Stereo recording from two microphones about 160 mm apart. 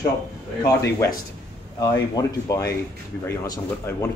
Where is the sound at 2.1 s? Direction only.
20° left (ahead or behind).